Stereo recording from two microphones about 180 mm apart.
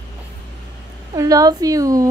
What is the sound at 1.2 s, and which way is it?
Speech, 20° right (ahead or behind).